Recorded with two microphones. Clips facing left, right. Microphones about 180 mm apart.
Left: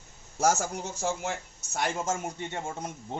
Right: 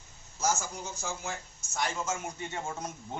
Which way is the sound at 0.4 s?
70° left (ahead or behind).